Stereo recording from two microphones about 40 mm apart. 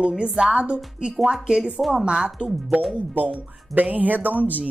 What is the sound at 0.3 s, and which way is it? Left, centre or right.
Speech, right.